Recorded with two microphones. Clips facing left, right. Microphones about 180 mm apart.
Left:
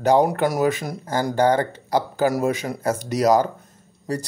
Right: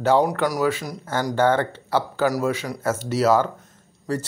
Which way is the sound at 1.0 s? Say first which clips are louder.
Left 2 dB; 35° left (ahead or behind).